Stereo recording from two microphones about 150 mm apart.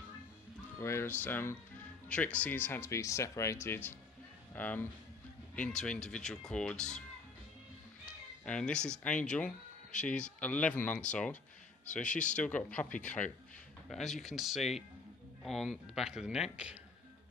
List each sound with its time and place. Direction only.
0.7 s speech: 15° left (ahead or behind)
8.0 s speech: 5° left (ahead or behind)
12.0 s speech: 55° left (ahead or behind)
12.4 s speech: 10° left (ahead or behind)